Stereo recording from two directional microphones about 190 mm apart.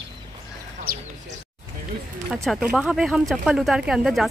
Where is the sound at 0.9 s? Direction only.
50° right (ahead or behind).